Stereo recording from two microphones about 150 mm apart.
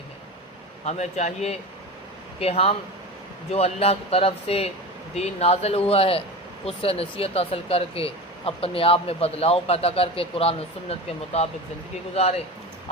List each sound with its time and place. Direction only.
0.9 s speech: 50° left (ahead or behind)
12.1 s speech: 45° left (ahead or behind)